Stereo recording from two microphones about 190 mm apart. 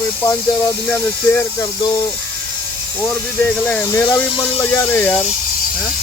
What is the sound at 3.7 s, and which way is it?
Speech, 10° left (ahead or behind).